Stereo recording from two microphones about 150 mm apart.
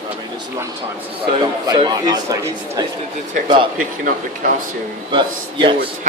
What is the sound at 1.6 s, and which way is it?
A man's voice, 30° right (ahead or behind).